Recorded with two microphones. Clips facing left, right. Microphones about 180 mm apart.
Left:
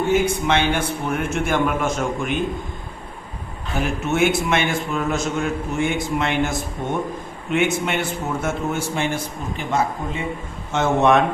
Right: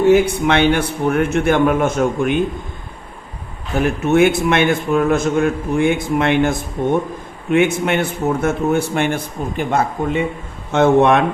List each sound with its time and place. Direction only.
0.1 s a man's voice: 65° right (ahead or behind)
3.8 s a man's voice: 55° right (ahead or behind)